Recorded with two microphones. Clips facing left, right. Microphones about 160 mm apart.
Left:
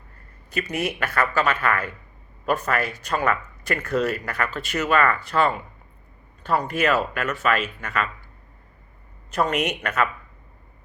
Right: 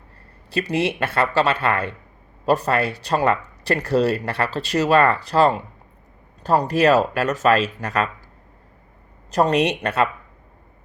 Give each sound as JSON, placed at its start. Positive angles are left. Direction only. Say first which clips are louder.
{"t": 0.5, "sound": "speech", "louder": "right 5 dB", "side_deg": -30}
{"t": 9.3, "sound": "speech", "louder": "right 5 dB", "side_deg": -35}